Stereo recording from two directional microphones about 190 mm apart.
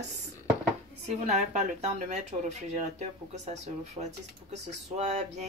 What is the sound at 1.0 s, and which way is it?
Speech, 35° right (ahead or behind).